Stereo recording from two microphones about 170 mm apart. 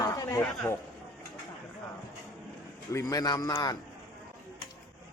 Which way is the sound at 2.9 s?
20° left (ahead or behind).